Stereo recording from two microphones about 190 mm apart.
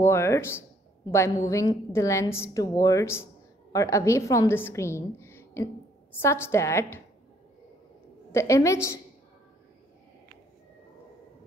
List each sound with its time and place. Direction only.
0.0 s a woman's voice: 15° left (ahead or behind)
8.3 s a woman's voice: 15° left (ahead or behind)